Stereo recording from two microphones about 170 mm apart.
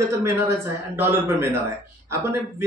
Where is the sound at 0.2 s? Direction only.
15° right (ahead or behind).